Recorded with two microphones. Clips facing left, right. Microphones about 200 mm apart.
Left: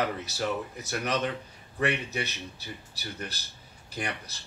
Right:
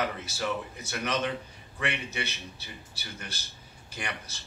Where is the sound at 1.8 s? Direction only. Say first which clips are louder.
Left 4 dB; 35° left (ahead or behind).